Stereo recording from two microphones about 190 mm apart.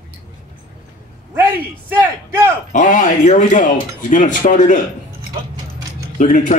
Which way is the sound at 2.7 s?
40° left (ahead or behind).